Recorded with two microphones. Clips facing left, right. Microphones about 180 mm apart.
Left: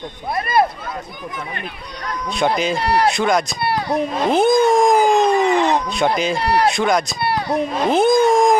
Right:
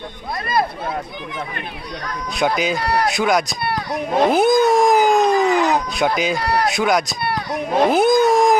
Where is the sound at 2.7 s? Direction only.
25° left (ahead or behind).